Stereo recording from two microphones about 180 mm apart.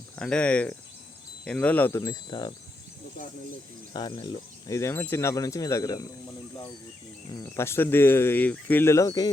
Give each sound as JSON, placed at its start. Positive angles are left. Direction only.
{"t": 0.2, "sound": "speech", "side_deg": 5}
{"t": 3.9, "sound": "speech", "side_deg": 25}
{"t": 4.7, "sound": "speech", "side_deg": 15}
{"t": 7.3, "sound": "speech", "side_deg": 15}